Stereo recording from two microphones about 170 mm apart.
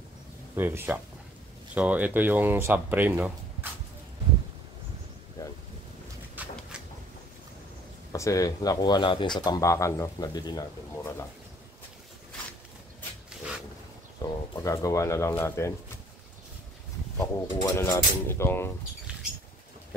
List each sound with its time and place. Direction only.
0.6 s speech: 10° right (ahead or behind)
6.4 s a sound: 10° right (ahead or behind)
8.1 s speech: 20° left (ahead or behind)
14.2 s speech: 20° left (ahead or behind)
17.2 s speech: 20° left (ahead or behind)